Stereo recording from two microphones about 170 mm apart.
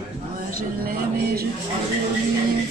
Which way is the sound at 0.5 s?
60° right (ahead or behind).